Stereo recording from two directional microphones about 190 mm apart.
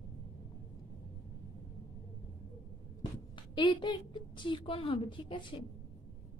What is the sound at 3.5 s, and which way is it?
A woman's voice, 25° left (ahead or behind).